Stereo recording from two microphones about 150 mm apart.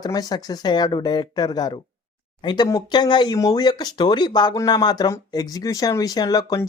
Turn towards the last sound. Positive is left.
turn(degrees=25)  # may be behind; listen again after turning